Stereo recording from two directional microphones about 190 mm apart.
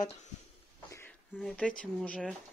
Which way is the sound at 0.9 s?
10° left (ahead or behind).